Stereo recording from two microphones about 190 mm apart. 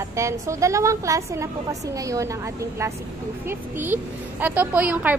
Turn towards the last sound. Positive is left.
turn(degrees=-5)  # may be behind; listen again after turning